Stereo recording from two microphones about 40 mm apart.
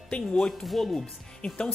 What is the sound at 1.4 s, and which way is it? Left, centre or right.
Speech, left.